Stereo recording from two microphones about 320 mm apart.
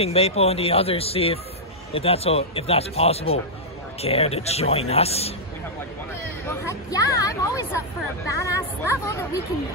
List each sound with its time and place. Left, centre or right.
0.0 s speech: centre
6.6 s speech: centre